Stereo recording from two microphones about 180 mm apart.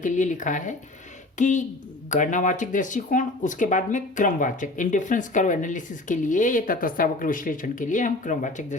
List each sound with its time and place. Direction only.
0.0 s speech: 45° left (ahead or behind)